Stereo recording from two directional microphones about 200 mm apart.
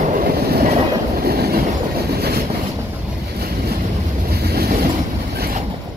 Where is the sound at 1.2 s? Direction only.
50° right (ahead or behind).